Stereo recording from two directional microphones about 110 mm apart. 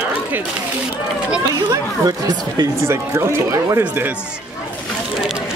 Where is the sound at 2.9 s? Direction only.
25° right (ahead or behind).